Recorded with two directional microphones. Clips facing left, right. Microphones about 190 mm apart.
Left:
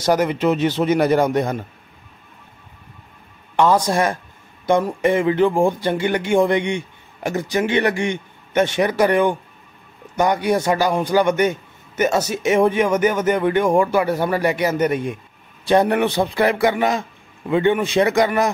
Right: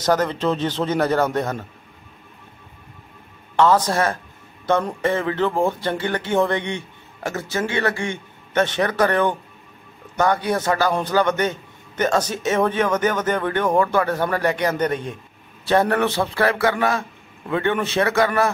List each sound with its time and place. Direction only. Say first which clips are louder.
0.0 s a man's voice: left 2 dB; 10° left (ahead or behind)
3.5 s a man's voice: left 1 dB; 10° left (ahead or behind)